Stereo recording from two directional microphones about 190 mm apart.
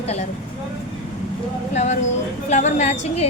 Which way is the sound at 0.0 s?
35° left (ahead or behind).